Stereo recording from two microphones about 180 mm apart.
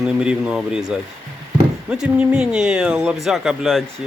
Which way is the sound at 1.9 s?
5° right (ahead or behind).